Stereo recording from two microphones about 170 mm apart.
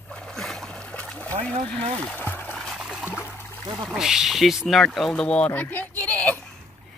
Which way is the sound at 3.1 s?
15° left (ahead or behind).